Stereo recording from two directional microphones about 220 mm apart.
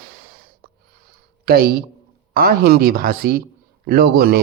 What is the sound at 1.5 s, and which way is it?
Speech, 45° right (ahead or behind).